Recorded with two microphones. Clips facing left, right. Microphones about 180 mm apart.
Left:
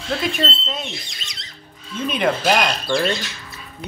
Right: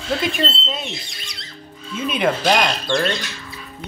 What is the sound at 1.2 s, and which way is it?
Music, 20° left (ahead or behind).